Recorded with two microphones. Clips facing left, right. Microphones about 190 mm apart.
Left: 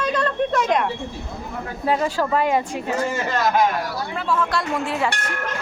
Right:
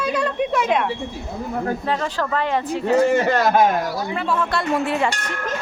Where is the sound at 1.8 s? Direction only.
10° left (ahead or behind).